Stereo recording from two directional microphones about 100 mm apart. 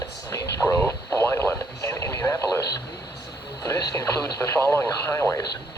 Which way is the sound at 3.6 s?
30° left (ahead or behind).